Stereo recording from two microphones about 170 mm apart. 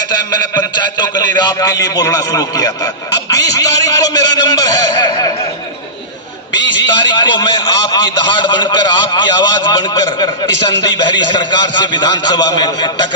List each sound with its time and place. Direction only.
0.9 s a man's voice: 25° left (ahead or behind)
7.0 s a man's voice: 25° left (ahead or behind)